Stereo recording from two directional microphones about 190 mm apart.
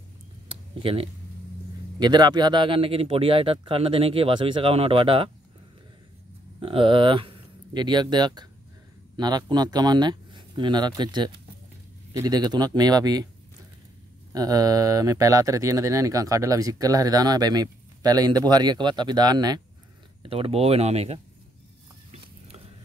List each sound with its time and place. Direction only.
0.5 s a sound: 30° right (ahead or behind)
2.0 s speech: 20° right (ahead or behind)
6.6 s speech: 30° right (ahead or behind)
14.3 s speech: 20° right (ahead or behind); by 21.2 s 35° right (ahead or behind)